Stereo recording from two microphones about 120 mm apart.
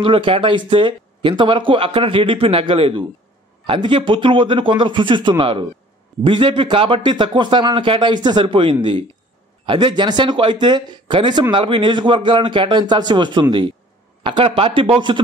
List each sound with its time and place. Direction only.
0.0 s a man's voice: 45° right (ahead or behind)